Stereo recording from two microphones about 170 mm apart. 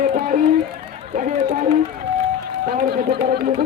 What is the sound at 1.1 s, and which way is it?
Run, 50° right (ahead or behind).